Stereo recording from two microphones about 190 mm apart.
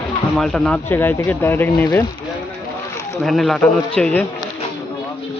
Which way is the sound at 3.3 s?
Centre (ahead or behind).